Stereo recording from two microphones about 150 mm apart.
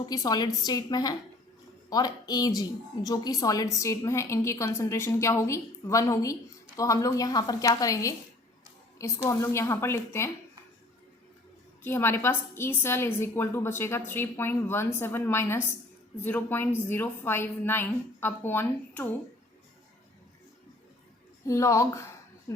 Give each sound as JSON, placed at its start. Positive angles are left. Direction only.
{"t": 0.0, "sound": "a woman's voice", "side_deg": 25}
{"t": 11.8, "sound": "a woman's voice", "side_deg": 15}
{"t": 21.4, "sound": "speech", "side_deg": 20}